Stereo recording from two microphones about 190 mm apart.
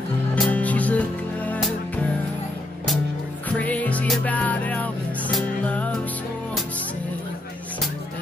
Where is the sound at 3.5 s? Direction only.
5° left (ahead or behind).